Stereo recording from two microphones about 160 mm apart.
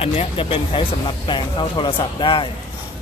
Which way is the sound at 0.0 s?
35° left (ahead or behind).